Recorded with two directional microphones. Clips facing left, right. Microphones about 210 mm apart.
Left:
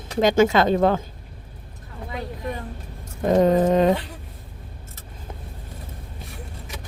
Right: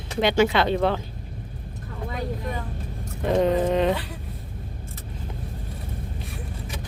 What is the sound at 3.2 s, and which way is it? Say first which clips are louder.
Speech: left 4 dB; 45° left (ahead or behind).